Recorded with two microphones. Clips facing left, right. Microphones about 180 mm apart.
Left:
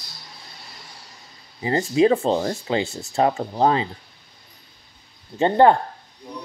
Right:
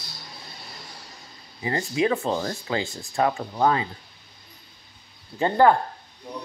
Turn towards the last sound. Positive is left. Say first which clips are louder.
# left 3 dB
turn(degrees=25)  # may be behind; listen again after turning